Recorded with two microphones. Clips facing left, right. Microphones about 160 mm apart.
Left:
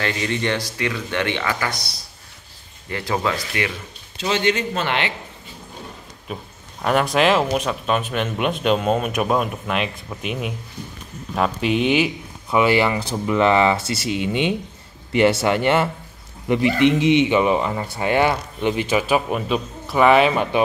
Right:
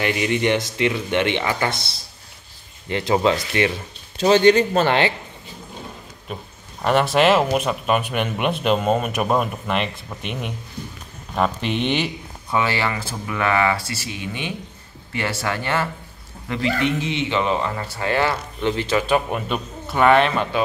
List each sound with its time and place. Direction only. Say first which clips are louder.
0.0 s speech: right 3 dB; 15° right (ahead or behind)
4.2 s a man's voice: right 7 dB; 35° right (ahead or behind)
6.2 s speech: left 1 dB; centre (ahead or behind)
12.6 s speech: left 6 dB; 20° left (ahead or behind)